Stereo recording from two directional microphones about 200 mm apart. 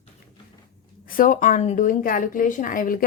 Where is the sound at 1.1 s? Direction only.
40° left (ahead or behind).